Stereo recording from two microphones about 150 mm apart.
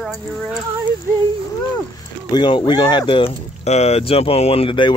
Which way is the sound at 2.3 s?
30° left (ahead or behind).